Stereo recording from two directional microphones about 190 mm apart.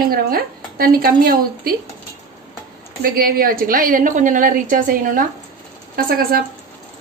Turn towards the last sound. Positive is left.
turn(degrees=-55)  # may be behind; listen again after turning